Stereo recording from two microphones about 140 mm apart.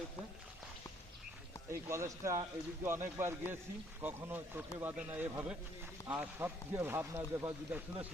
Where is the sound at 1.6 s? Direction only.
20° right (ahead or behind).